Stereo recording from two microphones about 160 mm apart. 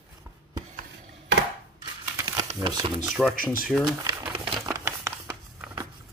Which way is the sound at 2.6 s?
25° right (ahead or behind).